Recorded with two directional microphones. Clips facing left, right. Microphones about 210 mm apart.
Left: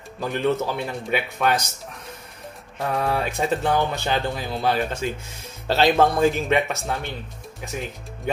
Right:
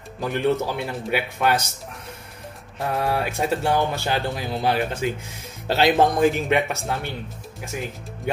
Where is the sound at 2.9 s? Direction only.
10° right (ahead or behind).